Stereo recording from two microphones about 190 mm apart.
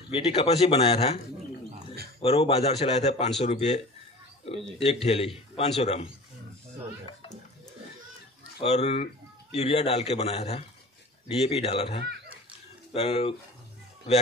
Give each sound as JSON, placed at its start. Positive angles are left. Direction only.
{"t": 0.1, "sound": "speech", "side_deg": 30}
{"t": 8.6, "sound": "speech", "side_deg": 30}